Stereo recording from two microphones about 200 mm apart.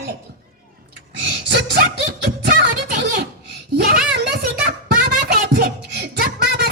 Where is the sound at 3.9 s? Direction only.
50° right (ahead or behind).